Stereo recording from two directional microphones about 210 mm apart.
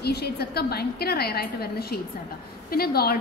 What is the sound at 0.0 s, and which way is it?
A woman's voice, 50° left (ahead or behind).